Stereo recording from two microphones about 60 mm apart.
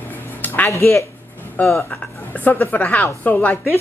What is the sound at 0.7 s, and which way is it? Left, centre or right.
Speech, left.